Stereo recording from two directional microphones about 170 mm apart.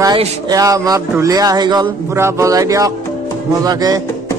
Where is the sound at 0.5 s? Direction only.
20° right (ahead or behind).